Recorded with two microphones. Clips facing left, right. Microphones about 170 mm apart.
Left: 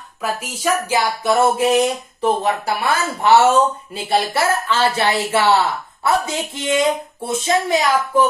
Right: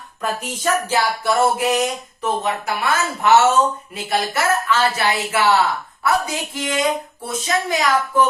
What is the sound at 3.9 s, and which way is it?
Speech, 30° left (ahead or behind).